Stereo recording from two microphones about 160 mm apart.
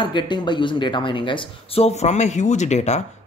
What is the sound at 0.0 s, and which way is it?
Speech, 30° left (ahead or behind).